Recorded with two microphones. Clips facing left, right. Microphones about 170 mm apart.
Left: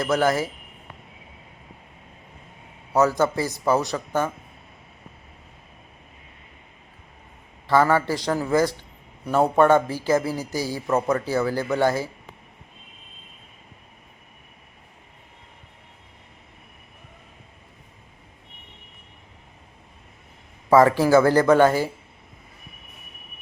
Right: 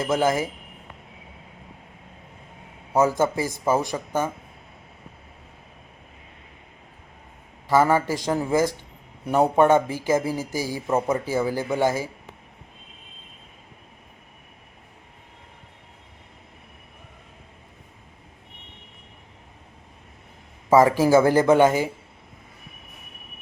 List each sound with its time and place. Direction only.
0.0 s speech: 20° right (ahead or behind)
2.9 s speech: 15° right (ahead or behind)
3.9 s speech: 10° right (ahead or behind)
7.7 s speech: 15° right (ahead or behind)
20.7 s speech: 20° right (ahead or behind)